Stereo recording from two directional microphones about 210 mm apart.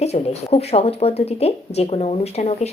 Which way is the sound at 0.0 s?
30° left (ahead or behind).